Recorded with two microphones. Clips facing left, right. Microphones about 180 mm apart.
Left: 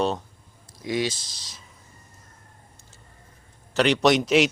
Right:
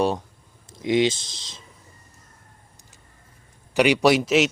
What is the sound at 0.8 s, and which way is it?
Speech, 20° right (ahead or behind).